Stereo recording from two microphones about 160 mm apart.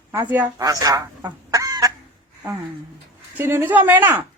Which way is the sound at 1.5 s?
25° right (ahead or behind).